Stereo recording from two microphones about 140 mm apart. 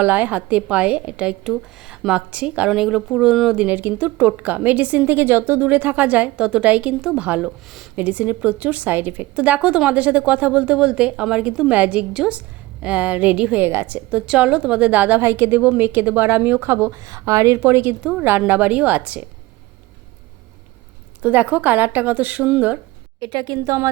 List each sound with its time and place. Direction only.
0.0 s a woman's voice: 10° right (ahead or behind)
21.2 s a woman's voice: 10° right (ahead or behind)
23.2 s a woman's voice: 35° right (ahead or behind)
23.6 s speech: 20° right (ahead or behind)